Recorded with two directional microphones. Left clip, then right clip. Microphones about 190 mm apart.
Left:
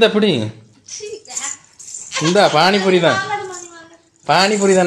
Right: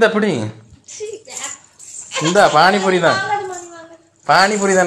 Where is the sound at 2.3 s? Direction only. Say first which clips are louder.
Right 1 dB; 20° left (ahead or behind).